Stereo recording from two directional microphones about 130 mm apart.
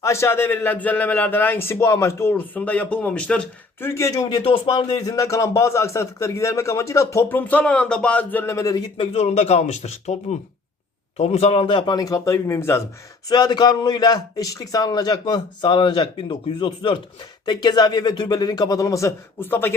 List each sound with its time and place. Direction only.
0.0 s a man's voice: 20° left (ahead or behind)
9.0 s a man's voice: 55° left (ahead or behind); by 12.8 s 20° left (ahead or behind)
13.2 s a man's voice: 30° left (ahead or behind)